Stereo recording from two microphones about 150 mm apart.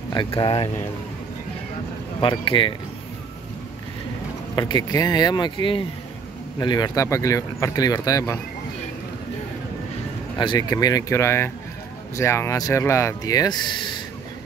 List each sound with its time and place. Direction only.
0.1 s speech: 30° left (ahead or behind)
2.1 s speech: 30° left (ahead or behind)
4.6 s speech: 30° left (ahead or behind)
10.4 s speech: 30° left (ahead or behind)